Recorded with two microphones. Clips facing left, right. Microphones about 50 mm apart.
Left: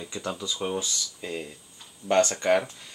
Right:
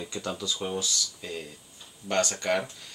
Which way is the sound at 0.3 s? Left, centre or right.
Centre.